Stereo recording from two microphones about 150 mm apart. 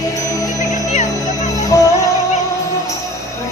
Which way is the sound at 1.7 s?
20° left (ahead or behind).